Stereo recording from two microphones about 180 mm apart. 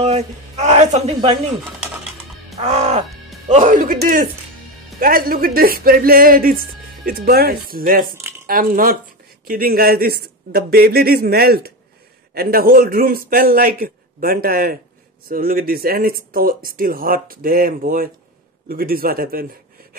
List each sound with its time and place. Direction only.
0.0 s a man's voice: 40° right (ahead or behind)
2.6 s a man's voice: 40° right (ahead or behind); by 19.4 s 55° right (ahead or behind)